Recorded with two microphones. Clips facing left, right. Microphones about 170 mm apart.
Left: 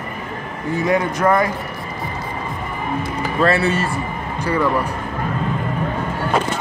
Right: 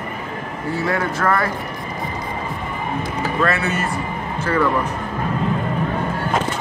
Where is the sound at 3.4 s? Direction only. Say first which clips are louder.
Left 5 dB; 30° left (ahead or behind).